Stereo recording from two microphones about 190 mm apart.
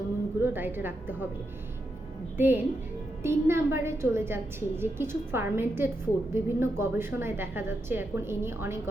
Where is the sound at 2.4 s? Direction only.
10° right (ahead or behind).